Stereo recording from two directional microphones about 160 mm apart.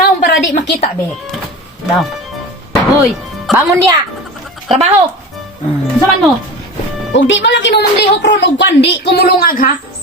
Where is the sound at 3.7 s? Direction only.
15° right (ahead or behind).